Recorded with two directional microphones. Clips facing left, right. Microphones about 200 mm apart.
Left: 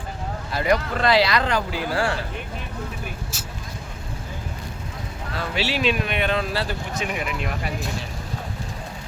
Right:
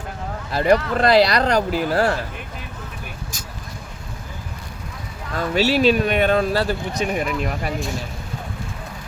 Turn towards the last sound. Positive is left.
turn(degrees=-40)  # may be behind; listen again after turning